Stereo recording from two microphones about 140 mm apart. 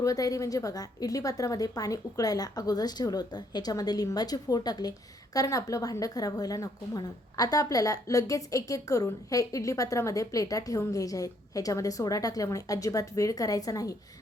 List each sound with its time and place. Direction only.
0.0 s a woman's voice: 25° left (ahead or behind)